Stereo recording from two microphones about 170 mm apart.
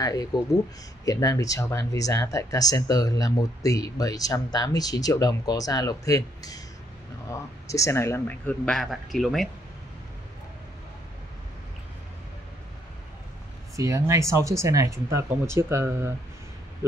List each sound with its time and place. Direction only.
0.0 s a man's voice: 20° left (ahead or behind); by 9.5 s centre (ahead or behind)
13.7 s speech: 20° right (ahead or behind)